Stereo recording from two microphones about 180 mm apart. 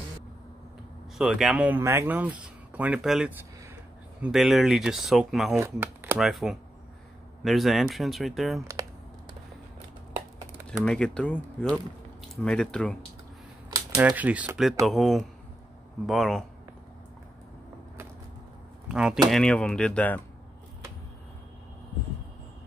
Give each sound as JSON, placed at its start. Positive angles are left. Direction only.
{"t": 1.1, "sound": "speech", "side_deg": 0}
{"t": 5.6, "sound": "speech", "side_deg": -15}
{"t": 6.1, "sound": "speech", "side_deg": 0}
{"t": 10.8, "sound": "speech", "side_deg": 5}
{"t": 13.9, "sound": "speech", "side_deg": -5}
{"t": 18.9, "sound": "speech", "side_deg": -5}